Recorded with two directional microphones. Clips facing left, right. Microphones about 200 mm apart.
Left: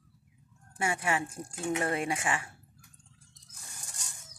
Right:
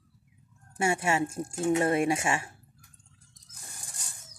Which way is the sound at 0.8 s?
25° right (ahead or behind).